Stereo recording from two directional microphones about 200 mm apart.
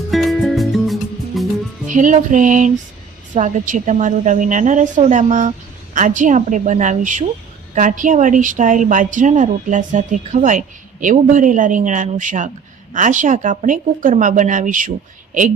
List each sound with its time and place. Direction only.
0.1 s music: centre (ahead or behind)
1.9 s a woman's voice: 40° right (ahead or behind)